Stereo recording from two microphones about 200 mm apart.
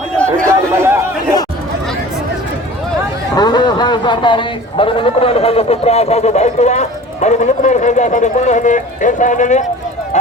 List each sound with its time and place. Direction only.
0.3 s chatter: 15° right (ahead or behind)
3.3 s speech: 20° left (ahead or behind); by 9.6 s 35° left (ahead or behind)